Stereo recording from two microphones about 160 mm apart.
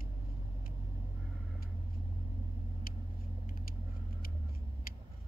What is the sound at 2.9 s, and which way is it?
Vehicle, 65° left (ahead or behind).